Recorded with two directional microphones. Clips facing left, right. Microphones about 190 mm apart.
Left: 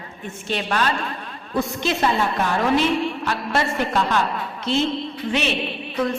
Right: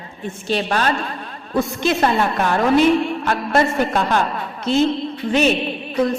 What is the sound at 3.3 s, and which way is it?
Speech, 50° right (ahead or behind).